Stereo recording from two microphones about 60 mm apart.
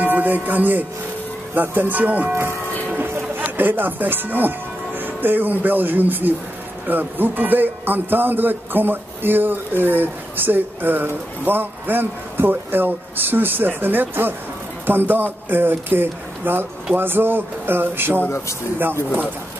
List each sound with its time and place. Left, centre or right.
0.0 s speech: right